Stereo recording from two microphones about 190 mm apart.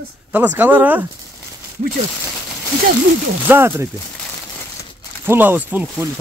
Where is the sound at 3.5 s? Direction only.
10° right (ahead or behind).